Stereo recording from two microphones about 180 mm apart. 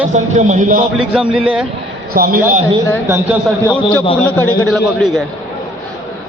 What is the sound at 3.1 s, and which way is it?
Speech, 15° right (ahead or behind).